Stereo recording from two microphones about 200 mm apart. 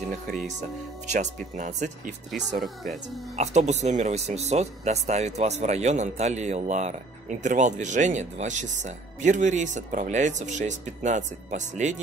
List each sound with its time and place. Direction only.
1.1 s speech: 35° right (ahead or behind)
2.5 s speech: centre (ahead or behind)
3.3 s speech: 35° right (ahead or behind)